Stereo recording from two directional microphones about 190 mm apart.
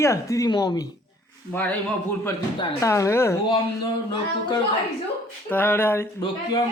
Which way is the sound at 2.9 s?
15° left (ahead or behind).